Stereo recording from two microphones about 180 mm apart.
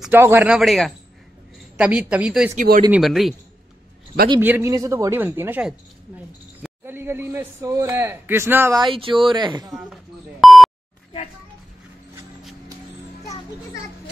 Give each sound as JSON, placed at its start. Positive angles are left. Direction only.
{"t": 0.0, "sound": "speech", "side_deg": -10}
{"t": 2.5, "sound": "speech", "side_deg": -50}
{"t": 2.9, "sound": "speech", "side_deg": 0}
{"t": 4.4, "sound": "a man's voice", "side_deg": -10}
{"t": 8.8, "sound": "speech", "side_deg": -30}
{"t": 10.4, "sound": "beep", "side_deg": 0}